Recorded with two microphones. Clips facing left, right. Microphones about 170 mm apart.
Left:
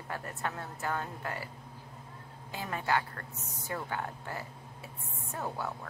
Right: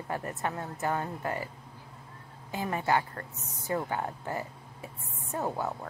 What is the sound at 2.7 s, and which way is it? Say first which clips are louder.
Speech: right 3 dB; 20° right (ahead or behind).